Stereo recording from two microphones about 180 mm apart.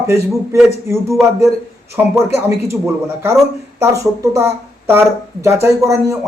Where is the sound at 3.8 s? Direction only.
15° right (ahead or behind).